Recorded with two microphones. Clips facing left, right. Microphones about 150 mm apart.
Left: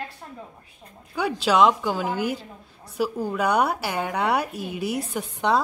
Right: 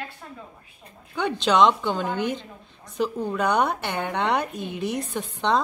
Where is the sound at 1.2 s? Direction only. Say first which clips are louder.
Even; 5° left (ahead or behind).